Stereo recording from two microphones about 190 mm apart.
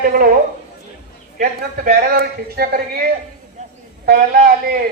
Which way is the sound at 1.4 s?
50° right (ahead or behind).